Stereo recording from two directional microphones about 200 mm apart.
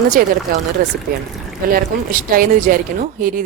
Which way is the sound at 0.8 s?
45° right (ahead or behind).